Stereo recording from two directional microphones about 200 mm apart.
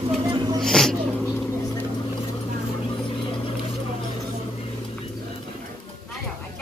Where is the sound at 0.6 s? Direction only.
Centre (ahead or behind).